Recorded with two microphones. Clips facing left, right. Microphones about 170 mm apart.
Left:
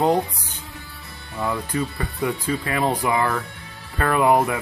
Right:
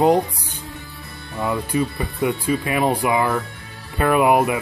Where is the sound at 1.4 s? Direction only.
10° right (ahead or behind).